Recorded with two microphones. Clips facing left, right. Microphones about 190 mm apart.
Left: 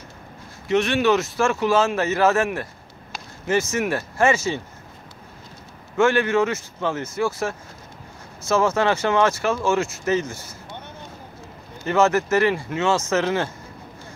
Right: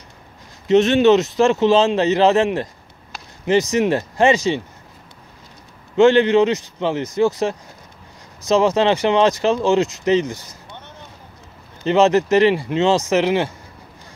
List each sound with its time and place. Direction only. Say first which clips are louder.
0.7 s speech: right 6 dB; 20° right (ahead or behind)
5.9 s speech: right 6 dB; 20° right (ahead or behind)
11.8 s speech: right 4 dB; 20° right (ahead or behind)